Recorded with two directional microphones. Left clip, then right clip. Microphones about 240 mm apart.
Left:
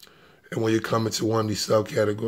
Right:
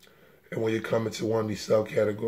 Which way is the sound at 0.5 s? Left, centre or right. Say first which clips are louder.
Left 3 dB; left.